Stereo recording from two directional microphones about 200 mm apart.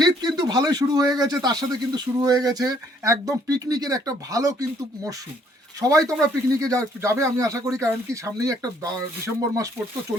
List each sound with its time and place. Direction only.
0.0 s speech: 20° right (ahead or behind)
5.8 s speech: 15° right (ahead or behind)